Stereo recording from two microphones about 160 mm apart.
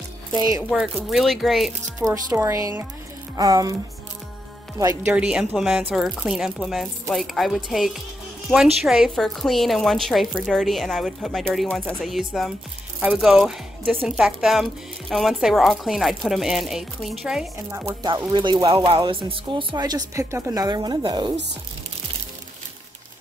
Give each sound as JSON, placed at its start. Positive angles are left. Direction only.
{"t": 0.3, "sound": "speech", "side_deg": -25}
{"t": 0.9, "sound": "speech", "side_deg": 0}
{"t": 2.0, "sound": "speech", "side_deg": -20}
{"t": 4.7, "sound": "speech", "side_deg": -20}
{"t": 5.1, "sound": "speech", "side_deg": -5}
{"t": 17.6, "sound": "speech", "side_deg": -15}
{"t": 18.0, "sound": "speech", "side_deg": -25}